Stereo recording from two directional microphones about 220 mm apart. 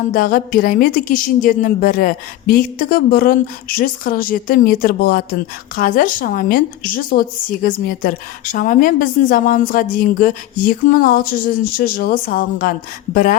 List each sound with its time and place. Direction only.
0.1 s a woman's voice: 40° left (ahead or behind)